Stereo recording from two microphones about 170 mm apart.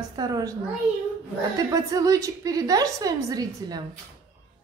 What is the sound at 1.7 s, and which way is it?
A woman's voice, 20° right (ahead or behind).